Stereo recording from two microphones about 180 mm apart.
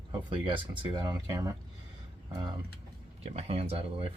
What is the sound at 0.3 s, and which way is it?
Speech, 25° right (ahead or behind).